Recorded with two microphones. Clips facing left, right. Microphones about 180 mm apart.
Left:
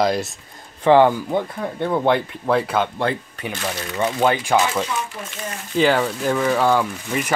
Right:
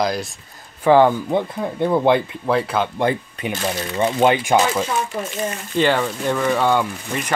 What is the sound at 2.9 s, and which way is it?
Speech, 15° right (ahead or behind).